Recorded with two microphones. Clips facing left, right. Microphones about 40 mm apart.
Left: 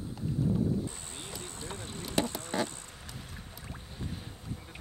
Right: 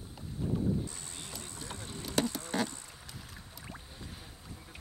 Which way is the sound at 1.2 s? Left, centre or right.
Left.